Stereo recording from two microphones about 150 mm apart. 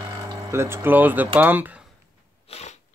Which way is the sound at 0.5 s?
15° right (ahead or behind).